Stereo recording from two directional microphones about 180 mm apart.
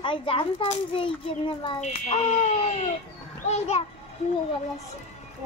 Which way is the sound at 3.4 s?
35° left (ahead or behind).